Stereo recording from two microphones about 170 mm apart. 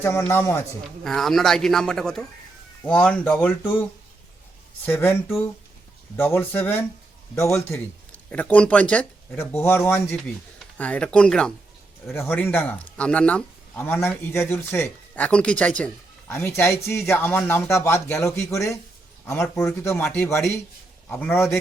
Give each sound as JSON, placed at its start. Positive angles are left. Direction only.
{"t": 0.0, "sound": "speech", "side_deg": 15}
{"t": 1.0, "sound": "speech", "side_deg": 0}
{"t": 4.9, "sound": "speech", "side_deg": 15}
{"t": 6.1, "sound": "speech", "side_deg": 10}